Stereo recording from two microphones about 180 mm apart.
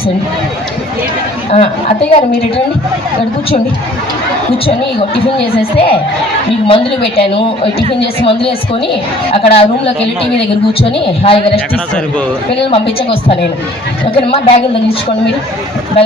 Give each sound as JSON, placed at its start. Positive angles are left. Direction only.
{"t": 1.5, "sound": "a man's voice", "side_deg": 35}
{"t": 5.7, "sound": "a man's voice", "side_deg": 30}
{"t": 11.2, "sound": "a man's voice", "side_deg": 30}
{"t": 12.7, "sound": "a man's voice", "side_deg": 30}